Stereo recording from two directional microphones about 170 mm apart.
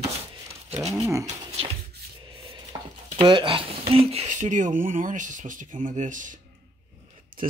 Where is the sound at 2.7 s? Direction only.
20° right (ahead or behind).